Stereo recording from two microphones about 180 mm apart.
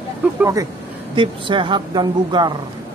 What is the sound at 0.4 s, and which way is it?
A woman's voice, 15° right (ahead or behind).